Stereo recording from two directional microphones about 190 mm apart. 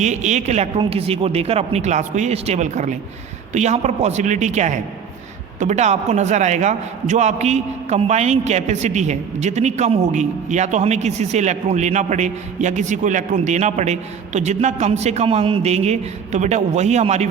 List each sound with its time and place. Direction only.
0.0 s a man's voice: 40° right (ahead or behind)